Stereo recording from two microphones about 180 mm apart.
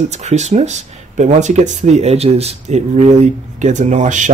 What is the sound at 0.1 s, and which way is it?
Speech, 40° right (ahead or behind).